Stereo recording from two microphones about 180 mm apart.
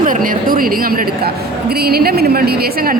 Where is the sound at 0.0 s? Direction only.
50° right (ahead or behind).